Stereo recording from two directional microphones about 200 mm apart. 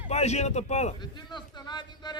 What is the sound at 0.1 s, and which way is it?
Speech, 35° left (ahead or behind).